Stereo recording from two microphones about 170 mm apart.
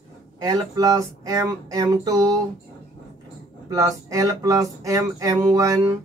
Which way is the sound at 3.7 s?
20° right (ahead or behind).